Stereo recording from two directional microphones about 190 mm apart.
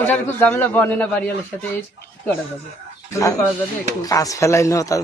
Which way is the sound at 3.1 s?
15° left (ahead or behind).